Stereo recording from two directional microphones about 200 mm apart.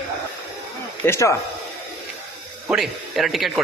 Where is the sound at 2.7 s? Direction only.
Centre (ahead or behind).